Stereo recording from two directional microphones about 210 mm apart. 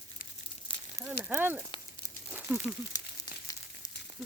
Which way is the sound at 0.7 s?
25° left (ahead or behind).